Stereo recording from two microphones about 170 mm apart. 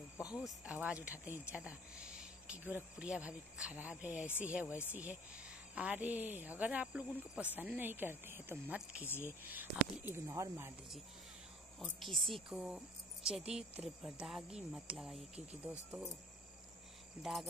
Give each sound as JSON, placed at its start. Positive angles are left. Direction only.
{"t": 0.2, "sound": "speech", "side_deg": -5}
{"t": 5.8, "sound": "speech", "side_deg": -10}
{"t": 9.0, "sound": "speech", "side_deg": 15}
{"t": 9.4, "sound": "speech", "side_deg": -10}
{"t": 11.8, "sound": "speech", "side_deg": 0}
{"t": 17.2, "sound": "speech", "side_deg": 0}